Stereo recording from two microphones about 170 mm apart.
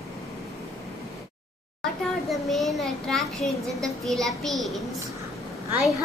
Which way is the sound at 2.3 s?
Centre (ahead or behind).